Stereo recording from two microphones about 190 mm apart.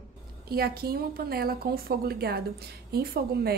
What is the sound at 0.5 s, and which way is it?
A woman's voice, 55° right (ahead or behind).